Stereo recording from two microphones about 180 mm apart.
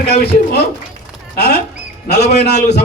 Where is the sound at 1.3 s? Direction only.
65° left (ahead or behind).